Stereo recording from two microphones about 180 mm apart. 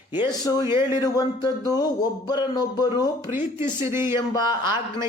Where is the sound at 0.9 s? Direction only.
20° left (ahead or behind).